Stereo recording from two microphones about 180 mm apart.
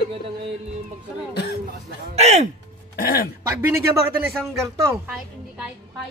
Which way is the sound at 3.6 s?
15° right (ahead or behind).